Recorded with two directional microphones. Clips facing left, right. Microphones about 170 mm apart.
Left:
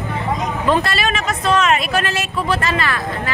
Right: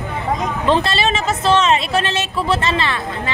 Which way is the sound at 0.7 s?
25° right (ahead or behind).